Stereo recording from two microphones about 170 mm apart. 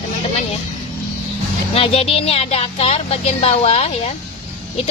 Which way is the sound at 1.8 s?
35° left (ahead or behind).